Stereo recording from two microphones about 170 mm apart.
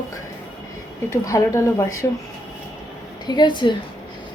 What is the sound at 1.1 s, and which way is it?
Speech, 20° left (ahead or behind).